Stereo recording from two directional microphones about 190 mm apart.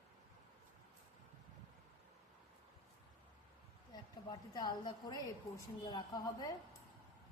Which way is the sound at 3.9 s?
20° left (ahead or behind).